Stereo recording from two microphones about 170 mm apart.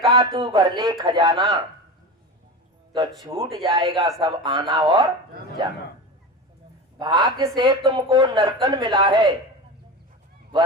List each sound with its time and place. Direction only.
0.1 s speech: 30° right (ahead or behind)
2.9 s speech: 20° right (ahead or behind)
7.0 s speech: 25° right (ahead or behind)